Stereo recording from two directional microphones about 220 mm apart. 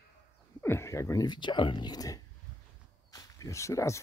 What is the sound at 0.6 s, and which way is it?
Speech, 10° left (ahead or behind).